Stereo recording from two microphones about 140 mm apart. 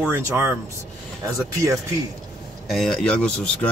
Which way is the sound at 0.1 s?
15° right (ahead or behind).